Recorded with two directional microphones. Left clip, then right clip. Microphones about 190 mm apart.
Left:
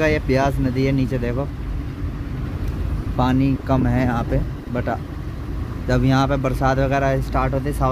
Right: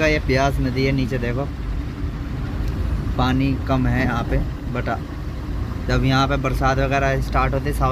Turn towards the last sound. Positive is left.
turn(degrees=10)  # may be behind; listen again after turning